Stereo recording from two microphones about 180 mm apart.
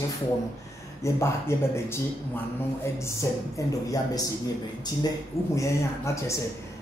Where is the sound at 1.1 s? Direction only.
15° left (ahead or behind).